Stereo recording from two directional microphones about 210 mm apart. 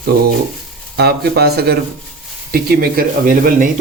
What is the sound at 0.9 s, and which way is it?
Speech, 50° right (ahead or behind).